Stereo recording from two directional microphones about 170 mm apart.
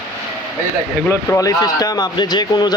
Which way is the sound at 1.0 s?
15° left (ahead or behind).